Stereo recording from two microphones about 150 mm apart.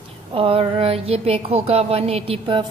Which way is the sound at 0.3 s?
35° right (ahead or behind).